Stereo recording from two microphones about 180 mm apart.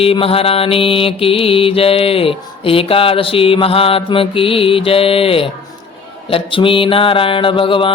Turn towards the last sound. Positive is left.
turn(degrees=30)  # may be behind; listen again after turning